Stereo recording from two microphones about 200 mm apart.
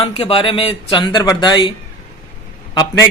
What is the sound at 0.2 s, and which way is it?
A man's voice, 25° left (ahead or behind).